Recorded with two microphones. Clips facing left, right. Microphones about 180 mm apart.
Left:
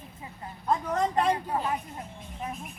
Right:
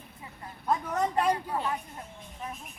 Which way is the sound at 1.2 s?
25° left (ahead or behind).